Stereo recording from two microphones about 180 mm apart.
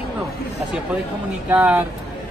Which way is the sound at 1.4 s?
10° right (ahead or behind).